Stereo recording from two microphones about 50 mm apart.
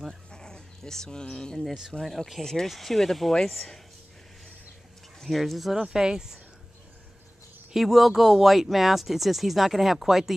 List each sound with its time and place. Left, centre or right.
0.3 s speech: centre
2.0 s speech: centre
2.4 s speech: centre
5.2 s speech: centre
7.7 s speech: centre